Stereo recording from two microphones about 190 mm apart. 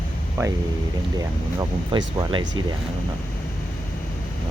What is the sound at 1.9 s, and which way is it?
Speech, 25° right (ahead or behind).